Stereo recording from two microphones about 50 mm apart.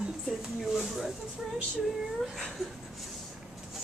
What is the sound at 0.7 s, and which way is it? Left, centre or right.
Speech, centre.